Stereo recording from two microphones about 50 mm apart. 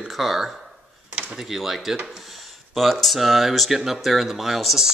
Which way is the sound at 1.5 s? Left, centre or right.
Centre.